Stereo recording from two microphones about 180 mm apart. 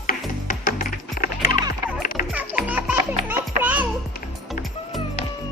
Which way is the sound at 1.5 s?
25° right (ahead or behind).